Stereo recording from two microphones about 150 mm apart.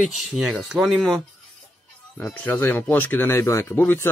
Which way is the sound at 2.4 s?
15° left (ahead or behind).